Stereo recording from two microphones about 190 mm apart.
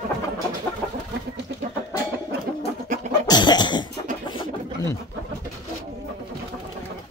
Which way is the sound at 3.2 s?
20° left (ahead or behind).